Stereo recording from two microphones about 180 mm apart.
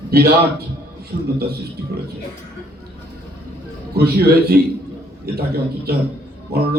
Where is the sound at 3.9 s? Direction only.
60° right (ahead or behind).